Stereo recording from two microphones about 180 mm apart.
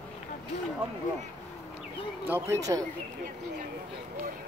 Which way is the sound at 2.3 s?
15° right (ahead or behind).